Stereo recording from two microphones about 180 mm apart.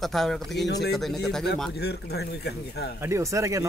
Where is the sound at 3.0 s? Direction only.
15° right (ahead or behind).